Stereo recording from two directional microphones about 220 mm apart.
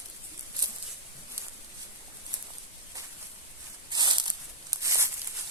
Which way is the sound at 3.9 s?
20° right (ahead or behind).